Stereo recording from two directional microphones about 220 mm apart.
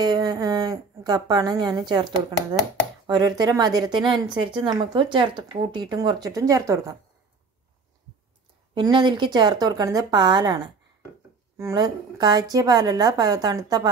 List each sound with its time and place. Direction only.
0.0 s speech: 15° right (ahead or behind)
3.1 s a woman's voice: 20° right (ahead or behind)
8.7 s a woman's voice: 20° right (ahead or behind)